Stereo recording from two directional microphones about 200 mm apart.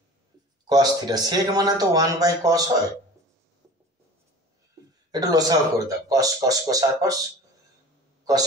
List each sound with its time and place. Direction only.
0.7 s speech: 20° right (ahead or behind)
5.1 s speech: 20° right (ahead or behind)